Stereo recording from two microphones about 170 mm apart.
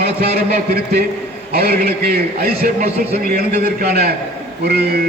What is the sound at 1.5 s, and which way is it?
A man's voice, 60° right (ahead or behind).